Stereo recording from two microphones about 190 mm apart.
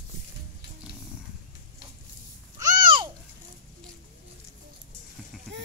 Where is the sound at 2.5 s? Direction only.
25° right (ahead or behind).